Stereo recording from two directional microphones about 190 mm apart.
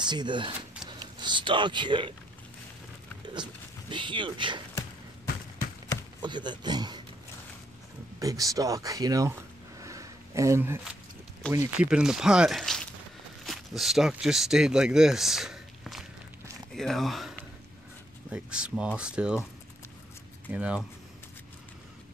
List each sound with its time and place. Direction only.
0.0 s speech: 25° right (ahead or behind)
3.9 s speech: 25° right (ahead or behind)
6.2 s speech: 25° right (ahead or behind)
8.2 s speech: 20° right (ahead or behind)
20.5 s speech: 5° right (ahead or behind)